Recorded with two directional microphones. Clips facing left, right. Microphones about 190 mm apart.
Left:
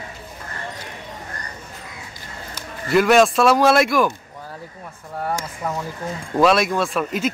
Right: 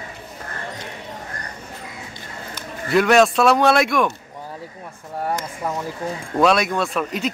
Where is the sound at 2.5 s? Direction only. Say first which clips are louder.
Left 1 dB; centre (ahead or behind).